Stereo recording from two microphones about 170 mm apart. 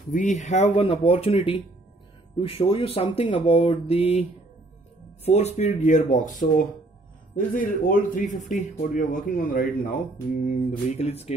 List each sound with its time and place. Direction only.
0.1 s speech: 45° left (ahead or behind)
7.3 s speech: 55° left (ahead or behind); by 11.3 s 40° left (ahead or behind)